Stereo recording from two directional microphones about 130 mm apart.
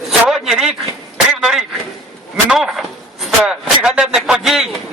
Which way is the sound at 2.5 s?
Centre (ahead or behind).